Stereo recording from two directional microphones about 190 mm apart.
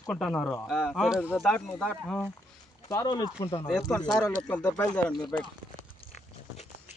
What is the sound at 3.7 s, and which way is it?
Speech, centre (ahead or behind).